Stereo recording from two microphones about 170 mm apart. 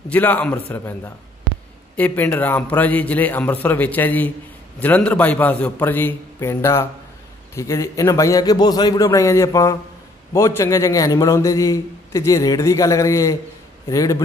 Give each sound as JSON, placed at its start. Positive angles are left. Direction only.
{"t": 0.1, "sound": "a man's voice", "side_deg": 10}